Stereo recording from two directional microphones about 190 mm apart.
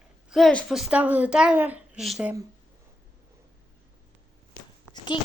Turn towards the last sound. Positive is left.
turn(degrees=25)  # may be behind; listen again after turning